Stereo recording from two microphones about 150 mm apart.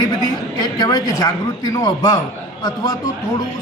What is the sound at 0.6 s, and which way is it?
A man's voice, 25° left (ahead or behind).